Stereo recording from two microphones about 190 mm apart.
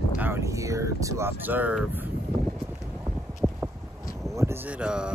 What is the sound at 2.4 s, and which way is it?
Wind, 50° right (ahead or behind).